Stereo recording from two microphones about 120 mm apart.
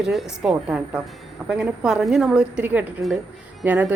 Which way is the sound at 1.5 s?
5° right (ahead or behind).